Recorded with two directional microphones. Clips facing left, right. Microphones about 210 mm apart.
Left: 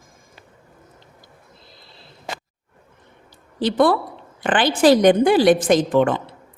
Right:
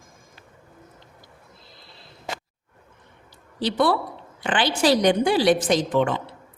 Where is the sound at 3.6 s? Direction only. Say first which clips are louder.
Left 4 dB; 50° left (ahead or behind).